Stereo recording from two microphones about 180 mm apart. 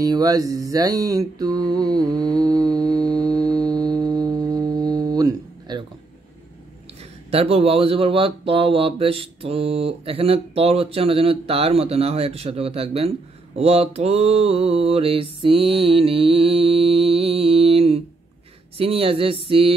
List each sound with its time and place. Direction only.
0.0 s mantra: 20° right (ahead or behind)
7.2 s speech: 35° right (ahead or behind)